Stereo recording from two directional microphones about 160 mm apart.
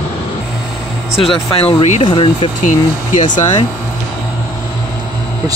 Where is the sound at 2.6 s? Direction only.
50° left (ahead or behind).